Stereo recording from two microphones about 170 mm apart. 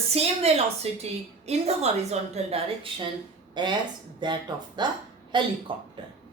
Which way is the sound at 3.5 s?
25° right (ahead or behind).